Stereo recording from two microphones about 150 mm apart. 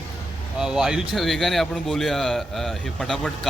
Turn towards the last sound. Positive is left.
turn(degrees=0)  # may be behind; listen again after turning